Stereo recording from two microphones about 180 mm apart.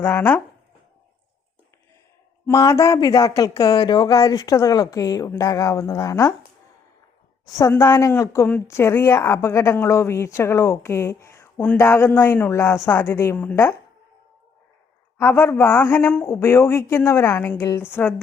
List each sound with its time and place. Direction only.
0.0 s speech: 10° left (ahead or behind)
2.5 s speech: 15° left (ahead or behind)
7.4 s speech: 15° left (ahead or behind)
15.2 s speech: 15° left (ahead or behind)